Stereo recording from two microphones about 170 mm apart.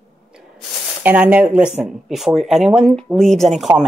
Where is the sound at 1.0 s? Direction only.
10° right (ahead or behind).